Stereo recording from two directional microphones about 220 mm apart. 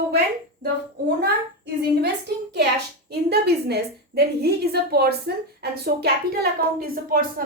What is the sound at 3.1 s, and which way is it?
A woman's voice, 50° right (ahead or behind).